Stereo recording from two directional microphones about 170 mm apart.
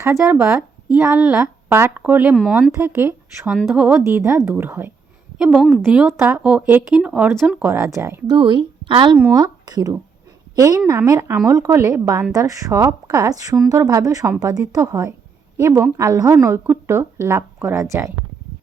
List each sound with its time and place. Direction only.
0.0 s a woman's voice: 15° right (ahead or behind)
3.5 s a woman's voice: centre (ahead or behind)
5.4 s a woman's voice: centre (ahead or behind); by 8.4 s 15° right (ahead or behind)
8.4 s a woman's voice: 30° right (ahead or behind)
9.1 s a woman's voice: 20° right (ahead or behind)